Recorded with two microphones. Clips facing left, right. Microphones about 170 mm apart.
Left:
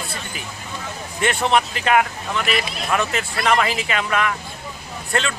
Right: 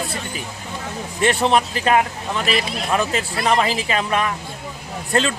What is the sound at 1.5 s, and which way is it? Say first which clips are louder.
A man's voice: right 1 dB; 35° right (ahead or behind).